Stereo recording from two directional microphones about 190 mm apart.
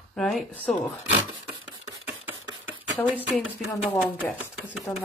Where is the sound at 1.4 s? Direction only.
15° right (ahead or behind).